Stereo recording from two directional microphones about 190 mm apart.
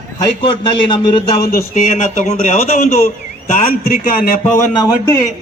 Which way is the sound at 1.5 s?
45° left (ahead or behind).